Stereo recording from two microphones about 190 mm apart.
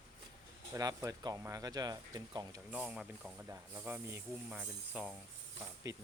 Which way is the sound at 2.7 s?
5° right (ahead or behind).